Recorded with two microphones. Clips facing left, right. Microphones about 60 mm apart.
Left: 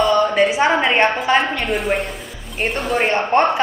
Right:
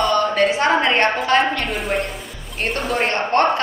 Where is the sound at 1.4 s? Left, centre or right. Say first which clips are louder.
Even; centre.